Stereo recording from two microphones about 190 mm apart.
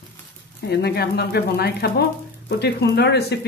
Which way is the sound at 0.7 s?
60° left (ahead or behind).